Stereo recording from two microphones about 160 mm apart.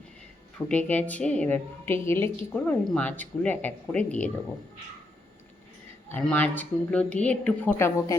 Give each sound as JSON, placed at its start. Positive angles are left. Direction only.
{"t": 0.7, "sound": "a woman's voice", "side_deg": 10}
{"t": 6.1, "sound": "a woman's voice", "side_deg": 10}